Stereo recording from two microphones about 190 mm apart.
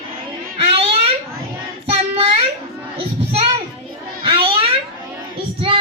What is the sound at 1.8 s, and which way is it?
Child singing, 30° right (ahead or behind).